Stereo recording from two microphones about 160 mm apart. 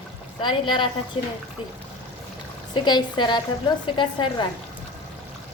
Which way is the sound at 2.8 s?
30° left (ahead or behind).